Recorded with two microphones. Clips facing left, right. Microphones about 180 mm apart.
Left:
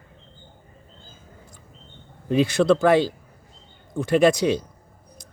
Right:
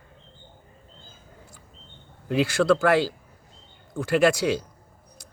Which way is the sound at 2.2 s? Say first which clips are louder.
Left 2 dB; 20° left (ahead or behind).